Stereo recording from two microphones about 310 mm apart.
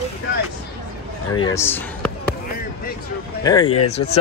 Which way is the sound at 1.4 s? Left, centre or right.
Centre.